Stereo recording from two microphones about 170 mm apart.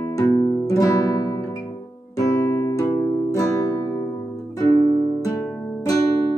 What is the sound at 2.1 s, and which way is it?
Music, 20° left (ahead or behind).